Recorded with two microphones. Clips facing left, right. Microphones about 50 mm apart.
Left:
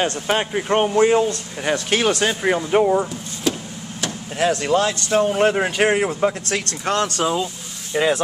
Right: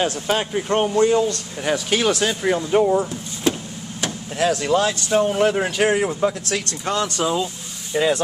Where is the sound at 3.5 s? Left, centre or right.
Right.